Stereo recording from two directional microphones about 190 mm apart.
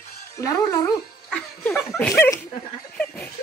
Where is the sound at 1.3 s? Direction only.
5° left (ahead or behind).